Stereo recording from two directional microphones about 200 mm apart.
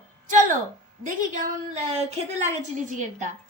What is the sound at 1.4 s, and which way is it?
A woman's voice, 35° right (ahead or behind).